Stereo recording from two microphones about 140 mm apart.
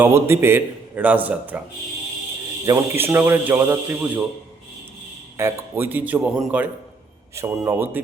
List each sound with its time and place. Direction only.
0.0 s a man's voice: 15° right (ahead or behind)
2.6 s a man's voice: 20° right (ahead or behind)
5.4 s a man's voice: 15° right (ahead or behind)
7.3 s a man's voice: 20° right (ahead or behind)